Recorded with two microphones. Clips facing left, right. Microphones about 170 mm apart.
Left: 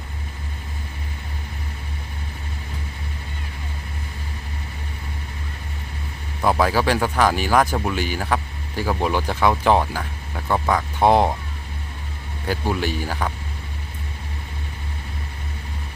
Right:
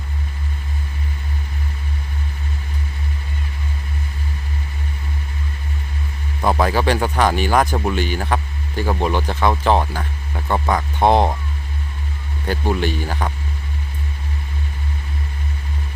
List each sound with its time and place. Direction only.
6.5 s speech: 5° left (ahead or behind)
12.5 s speech: 5° left (ahead or behind)